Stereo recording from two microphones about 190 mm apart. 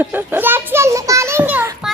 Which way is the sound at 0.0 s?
10° right (ahead or behind).